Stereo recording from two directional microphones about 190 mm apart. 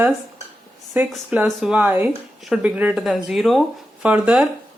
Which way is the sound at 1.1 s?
5° right (ahead or behind).